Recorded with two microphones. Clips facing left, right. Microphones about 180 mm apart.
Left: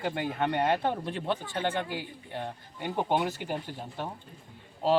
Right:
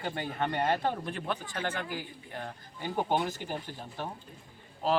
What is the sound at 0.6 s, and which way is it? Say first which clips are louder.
Speech: even; 20° left (ahead or behind).